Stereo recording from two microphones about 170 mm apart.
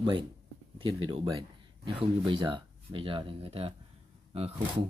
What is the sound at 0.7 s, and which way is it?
Speech, 30° right (ahead or behind).